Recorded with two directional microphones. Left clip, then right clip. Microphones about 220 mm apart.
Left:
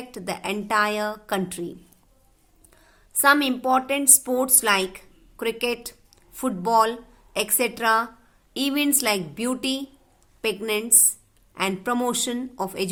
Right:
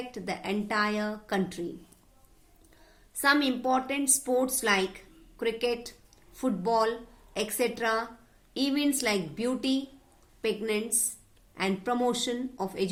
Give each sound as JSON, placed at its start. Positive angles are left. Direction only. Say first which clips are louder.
{"t": 0.1, "sound": "a woman's voice", "louder": "left 8 dB", "side_deg": 45}
{"t": 3.2, "sound": "a woman's voice", "louder": "left 6 dB", "side_deg": 45}